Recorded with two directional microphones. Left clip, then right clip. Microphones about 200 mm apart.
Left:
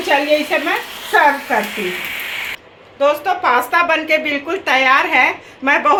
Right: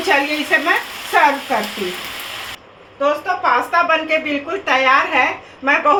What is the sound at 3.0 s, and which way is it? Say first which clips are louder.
A woman's voice: left 2 dB; 55° left (ahead or behind).